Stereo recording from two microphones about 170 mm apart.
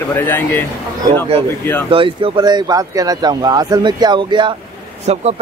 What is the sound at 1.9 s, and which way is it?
Speech, 30° right (ahead or behind).